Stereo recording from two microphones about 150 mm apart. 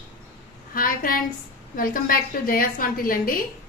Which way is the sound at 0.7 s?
70° left (ahead or behind).